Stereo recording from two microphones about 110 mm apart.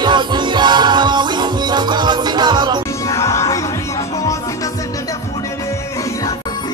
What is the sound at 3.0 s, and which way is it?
Music, 30° left (ahead or behind).